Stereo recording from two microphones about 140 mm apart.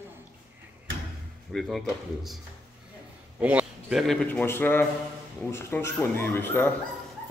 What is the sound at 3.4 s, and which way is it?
A man's voice, 10° right (ahead or behind).